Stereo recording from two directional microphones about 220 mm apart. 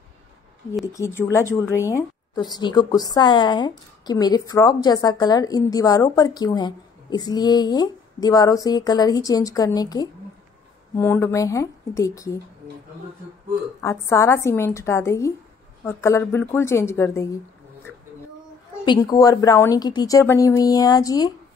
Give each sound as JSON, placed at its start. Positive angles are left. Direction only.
{"t": 0.9, "sound": "a woman's voice", "side_deg": 10}
{"t": 13.7, "sound": "a woman's voice", "side_deg": 10}
{"t": 18.9, "sound": "a woman's voice", "side_deg": 15}